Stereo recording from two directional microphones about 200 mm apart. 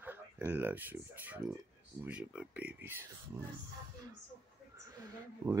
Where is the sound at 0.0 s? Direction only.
10° right (ahead or behind).